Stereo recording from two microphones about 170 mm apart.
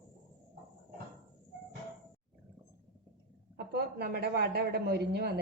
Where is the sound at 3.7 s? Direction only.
65° right (ahead or behind).